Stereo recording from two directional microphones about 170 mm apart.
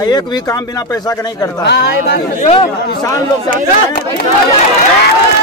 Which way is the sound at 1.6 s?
75° left (ahead or behind).